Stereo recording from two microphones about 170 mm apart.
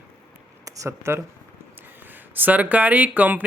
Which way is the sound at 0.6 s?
20° right (ahead or behind).